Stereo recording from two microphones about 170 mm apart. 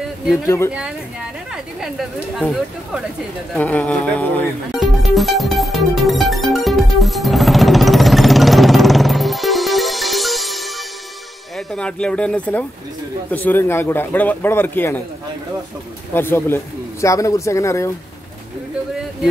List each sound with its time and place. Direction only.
1.8 s speech: centre (ahead or behind)
3.5 s music: 10° left (ahead or behind)
11.5 s a man's voice: 5° left (ahead or behind)
16.1 s a man's voice: 15° left (ahead or behind)